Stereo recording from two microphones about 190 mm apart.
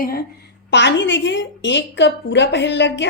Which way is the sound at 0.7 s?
70° left (ahead or behind).